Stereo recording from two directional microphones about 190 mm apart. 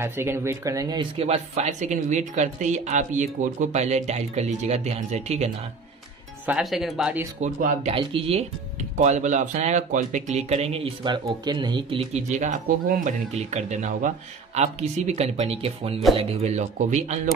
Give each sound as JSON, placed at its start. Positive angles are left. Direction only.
{"t": 0.0, "sound": "speech", "side_deg": -15}
{"t": 6.4, "sound": "speech", "side_deg": -5}
{"t": 7.4, "sound": "speech", "side_deg": -40}